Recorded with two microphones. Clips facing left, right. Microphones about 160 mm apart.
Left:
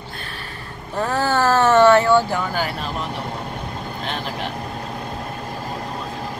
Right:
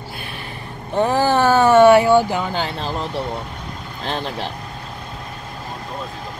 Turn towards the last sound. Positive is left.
turn(degrees=-35)  # may be behind; listen again after turning